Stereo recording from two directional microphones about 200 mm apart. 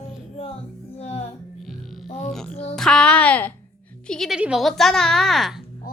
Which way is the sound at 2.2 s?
5° left (ahead or behind).